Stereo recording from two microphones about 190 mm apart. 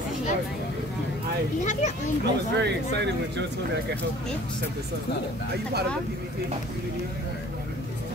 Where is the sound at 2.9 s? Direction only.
65° right (ahead or behind).